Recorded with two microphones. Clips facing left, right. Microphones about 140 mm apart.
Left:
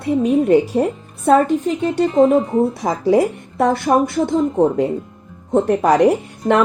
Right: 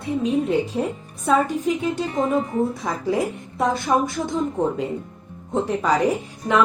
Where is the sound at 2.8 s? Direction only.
85° left.